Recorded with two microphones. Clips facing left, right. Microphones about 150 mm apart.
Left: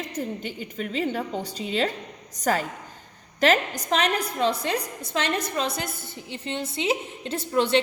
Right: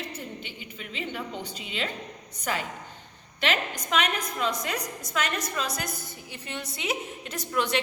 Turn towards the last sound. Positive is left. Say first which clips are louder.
# left 6 dB
turn(degrees=30)  # may be behind; listen again after turning